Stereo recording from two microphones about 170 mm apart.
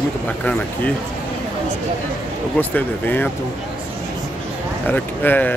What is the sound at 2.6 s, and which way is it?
Speech, 10° left (ahead or behind).